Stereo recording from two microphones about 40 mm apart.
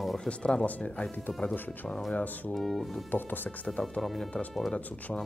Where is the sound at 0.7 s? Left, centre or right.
Left.